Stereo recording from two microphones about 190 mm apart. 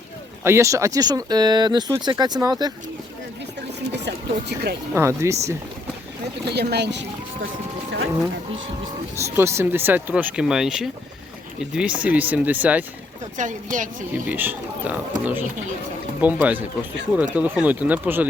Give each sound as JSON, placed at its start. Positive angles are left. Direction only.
{"t": 0.4, "sound": "speech", "side_deg": -15}
{"t": 3.9, "sound": "speech", "side_deg": -65}
{"t": 4.9, "sound": "speech", "side_deg": -15}
{"t": 6.5, "sound": "speech", "side_deg": -60}
{"t": 9.1, "sound": "speech", "side_deg": -15}
{"t": 13.3, "sound": "speech", "side_deg": -40}
{"t": 14.3, "sound": "speech", "side_deg": -10}